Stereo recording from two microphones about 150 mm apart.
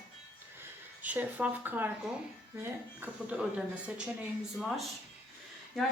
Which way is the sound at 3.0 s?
10° right (ahead or behind).